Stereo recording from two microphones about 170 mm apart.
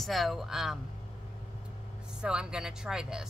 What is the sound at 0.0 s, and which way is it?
Speech, centre (ahead or behind).